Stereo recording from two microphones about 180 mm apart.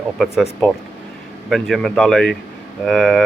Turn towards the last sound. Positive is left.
turn(degrees=0)  # may be behind; listen again after turning